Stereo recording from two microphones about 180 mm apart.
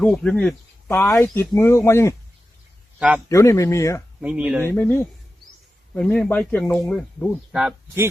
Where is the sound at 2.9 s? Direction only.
5° right (ahead or behind).